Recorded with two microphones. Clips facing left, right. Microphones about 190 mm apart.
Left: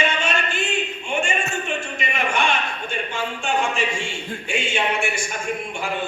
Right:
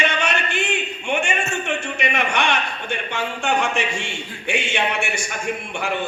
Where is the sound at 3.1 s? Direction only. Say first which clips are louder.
Right 3 dB; 70° right (ahead or behind).